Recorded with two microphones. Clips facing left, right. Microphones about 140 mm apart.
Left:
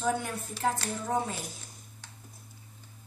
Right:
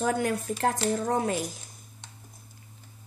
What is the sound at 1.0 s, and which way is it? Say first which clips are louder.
Speech: even; 70° right (ahead or behind).